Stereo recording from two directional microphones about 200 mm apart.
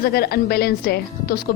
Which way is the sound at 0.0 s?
50° left (ahead or behind).